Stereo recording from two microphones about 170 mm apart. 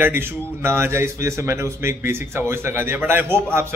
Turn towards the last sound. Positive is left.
turn(degrees=-15)  # may be behind; listen again after turning